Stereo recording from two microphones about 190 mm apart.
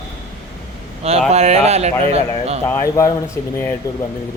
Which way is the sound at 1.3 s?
35° right (ahead or behind).